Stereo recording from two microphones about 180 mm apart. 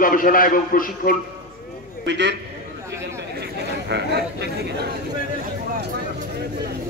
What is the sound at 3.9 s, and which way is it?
Speech, 70° right (ahead or behind).